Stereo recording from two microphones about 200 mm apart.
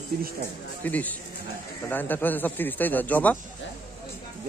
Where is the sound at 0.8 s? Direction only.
10° left (ahead or behind).